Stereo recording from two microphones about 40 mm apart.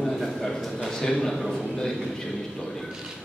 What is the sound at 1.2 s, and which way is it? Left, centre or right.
Speech, centre.